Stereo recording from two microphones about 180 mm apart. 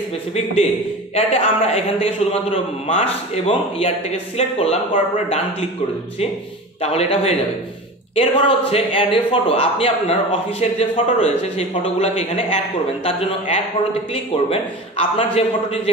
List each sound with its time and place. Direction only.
1.1 s a man's voice: 35° left (ahead or behind)
6.8 s a man's voice: 35° left (ahead or behind)